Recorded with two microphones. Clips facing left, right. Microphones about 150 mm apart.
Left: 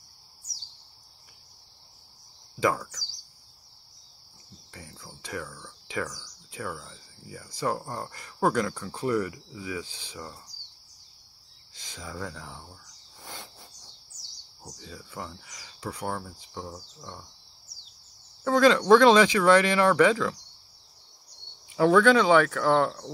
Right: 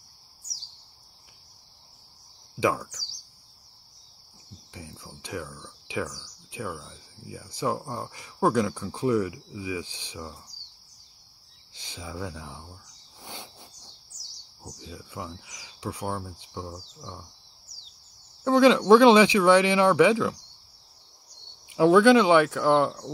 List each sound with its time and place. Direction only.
2.6 s speech: 10° right (ahead or behind)
4.7 s speech: 10° right (ahead or behind)
11.9 s speech: 10° right (ahead or behind)
13.2 s bird: 15° right (ahead or behind)
14.6 s speech: 10° right (ahead or behind)
18.4 s speech: 10° right (ahead or behind)
21.7 s speech: 10° right (ahead or behind)